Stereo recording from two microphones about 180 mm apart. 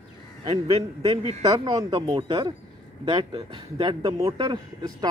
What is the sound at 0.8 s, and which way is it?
Speech, 30° right (ahead or behind).